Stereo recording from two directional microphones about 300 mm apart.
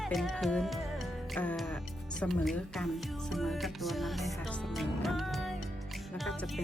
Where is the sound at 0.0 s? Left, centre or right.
Centre.